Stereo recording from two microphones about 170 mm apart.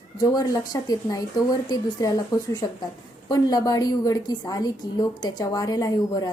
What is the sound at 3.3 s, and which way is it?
A woman's voice, 20° left (ahead or behind).